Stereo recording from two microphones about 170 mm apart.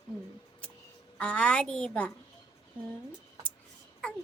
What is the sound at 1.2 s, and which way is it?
Speech, 5° left (ahead or behind).